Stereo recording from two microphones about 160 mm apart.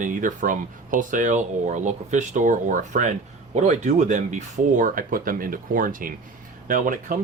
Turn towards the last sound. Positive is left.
turn(degrees=-60)  # may be behind; listen again after turning